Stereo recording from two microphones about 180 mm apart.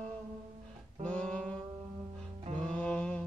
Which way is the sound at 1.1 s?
5° left (ahead or behind).